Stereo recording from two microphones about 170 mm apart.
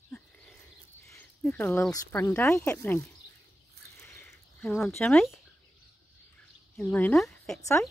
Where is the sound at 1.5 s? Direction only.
15° left (ahead or behind).